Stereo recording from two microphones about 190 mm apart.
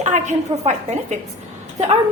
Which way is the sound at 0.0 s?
40° right (ahead or behind).